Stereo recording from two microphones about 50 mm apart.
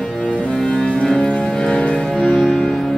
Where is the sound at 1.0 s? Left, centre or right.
Centre.